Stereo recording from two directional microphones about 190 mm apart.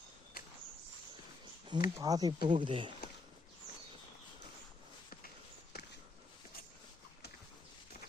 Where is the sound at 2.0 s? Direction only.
20° right (ahead or behind).